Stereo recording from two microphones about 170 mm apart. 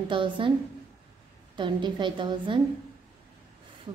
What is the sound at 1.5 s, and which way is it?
A woman's voice, 30° right (ahead or behind).